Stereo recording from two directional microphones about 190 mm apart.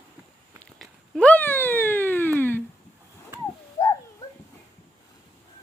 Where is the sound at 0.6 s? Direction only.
5° left (ahead or behind).